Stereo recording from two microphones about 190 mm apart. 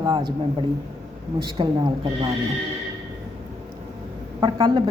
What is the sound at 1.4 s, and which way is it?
Speech, 25° right (ahead or behind).